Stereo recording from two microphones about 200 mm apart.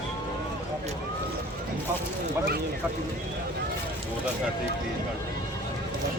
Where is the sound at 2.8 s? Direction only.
5° right (ahead or behind).